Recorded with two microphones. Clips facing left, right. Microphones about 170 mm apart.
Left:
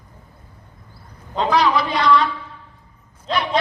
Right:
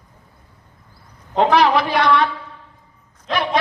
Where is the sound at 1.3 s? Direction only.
65° right (ahead or behind).